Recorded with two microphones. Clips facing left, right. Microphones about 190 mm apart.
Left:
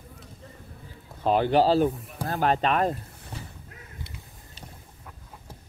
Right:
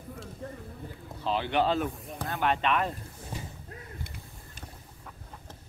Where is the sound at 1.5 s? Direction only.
35° left (ahead or behind).